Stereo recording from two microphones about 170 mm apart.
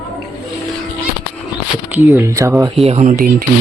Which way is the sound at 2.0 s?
15° right (ahead or behind).